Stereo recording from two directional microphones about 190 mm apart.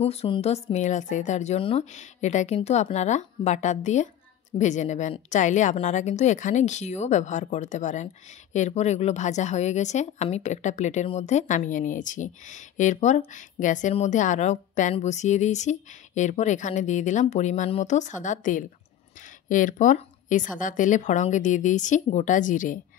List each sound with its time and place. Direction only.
0.0 s speech: 30° left (ahead or behind)